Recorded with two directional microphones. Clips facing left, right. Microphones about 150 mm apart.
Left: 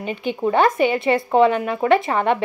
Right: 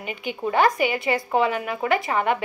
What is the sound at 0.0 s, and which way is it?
Speech, 25° left (ahead or behind).